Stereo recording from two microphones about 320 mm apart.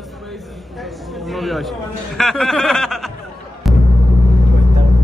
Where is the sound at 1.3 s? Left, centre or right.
Centre.